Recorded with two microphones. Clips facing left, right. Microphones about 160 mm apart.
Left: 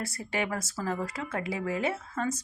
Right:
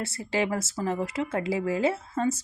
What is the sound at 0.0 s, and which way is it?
Speech, 25° right (ahead or behind).